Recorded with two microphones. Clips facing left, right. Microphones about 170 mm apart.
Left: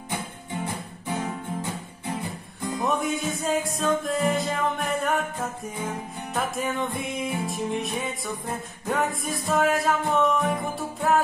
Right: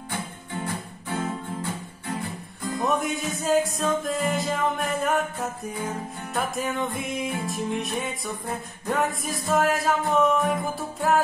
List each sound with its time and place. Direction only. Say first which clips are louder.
1.0 s music: even; 15° left (ahead or behind)
2.8 s music: even; centre (ahead or behind)